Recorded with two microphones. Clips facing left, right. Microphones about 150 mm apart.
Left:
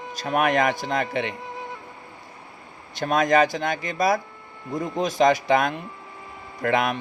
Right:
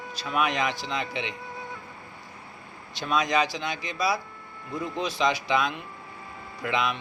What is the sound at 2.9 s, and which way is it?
A man's voice, 50° left (ahead or behind).